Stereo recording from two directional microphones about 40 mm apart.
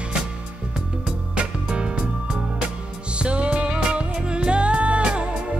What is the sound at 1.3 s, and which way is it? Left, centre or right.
Music, right.